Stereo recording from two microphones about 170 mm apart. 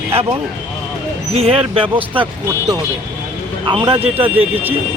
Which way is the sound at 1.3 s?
35° right (ahead or behind).